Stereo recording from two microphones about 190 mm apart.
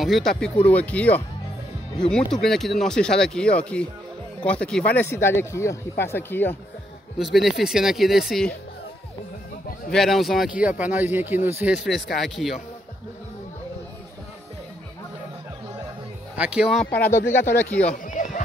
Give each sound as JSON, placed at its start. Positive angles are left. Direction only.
{"t": 0.0, "sound": "speech", "side_deg": 0}
{"t": 7.3, "sound": "speech", "side_deg": 0}
{"t": 9.8, "sound": "speech", "side_deg": 0}
{"t": 16.3, "sound": "speech", "side_deg": -5}
{"t": 16.8, "sound": "speech", "side_deg": 10}
{"t": 17.9, "sound": "a sound", "side_deg": 45}